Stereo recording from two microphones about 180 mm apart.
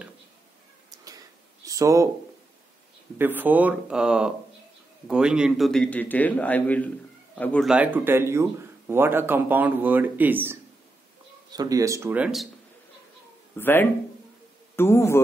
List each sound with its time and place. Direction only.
0.9 s a sound: 20° right (ahead or behind)
3.2 s a man's voice: 10° right (ahead or behind); by 7.6 s 10° left (ahead or behind)
7.6 s speech: 5° right (ahead or behind)
13.6 s a man's voice: 10° left (ahead or behind)